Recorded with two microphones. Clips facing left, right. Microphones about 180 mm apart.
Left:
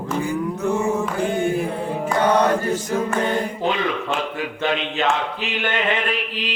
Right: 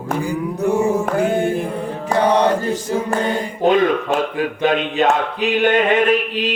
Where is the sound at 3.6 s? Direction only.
45° right (ahead or behind).